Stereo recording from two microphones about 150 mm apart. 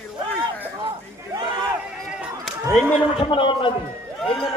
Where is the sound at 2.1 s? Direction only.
5° right (ahead or behind).